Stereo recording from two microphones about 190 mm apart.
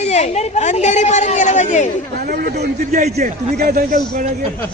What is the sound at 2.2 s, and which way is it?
Speech, 50° right (ahead or behind).